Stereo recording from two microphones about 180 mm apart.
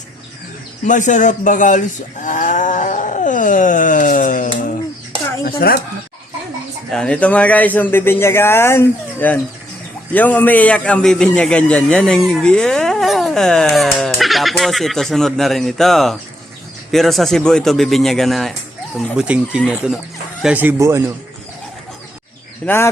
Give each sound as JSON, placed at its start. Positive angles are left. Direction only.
{"t": 0.9, "sound": "a man's voice", "side_deg": 45}
{"t": 2.2, "sound": "wild animals", "side_deg": 45}
{"t": 5.5, "sound": "speech", "side_deg": 55}
{"t": 6.9, "sound": "a man's voice", "side_deg": 5}
{"t": 22.6, "sound": "a man's voice", "side_deg": 10}